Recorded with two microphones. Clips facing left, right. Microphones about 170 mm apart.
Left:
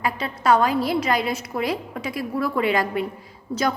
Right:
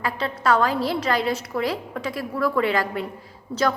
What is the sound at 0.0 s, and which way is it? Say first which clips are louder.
A woman's voice: left 1 dB; 15° left (ahead or behind).